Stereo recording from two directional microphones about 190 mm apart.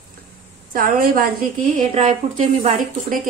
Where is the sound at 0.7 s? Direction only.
45° right (ahead or behind).